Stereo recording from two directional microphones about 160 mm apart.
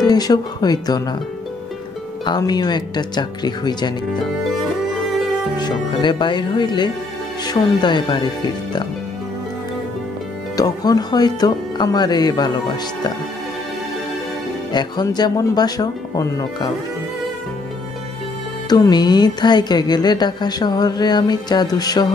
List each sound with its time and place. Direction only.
0.0 s speech: 25° left (ahead or behind)
2.2 s speech: 25° left (ahead or behind)
5.6 s speech: 25° left (ahead or behind)
10.5 s speech: 25° left (ahead or behind)
14.7 s speech: 25° left (ahead or behind)
18.7 s speech: 25° left (ahead or behind)